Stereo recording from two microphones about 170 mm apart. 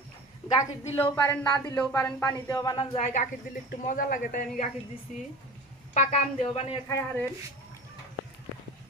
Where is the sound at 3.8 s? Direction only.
55° left (ahead or behind).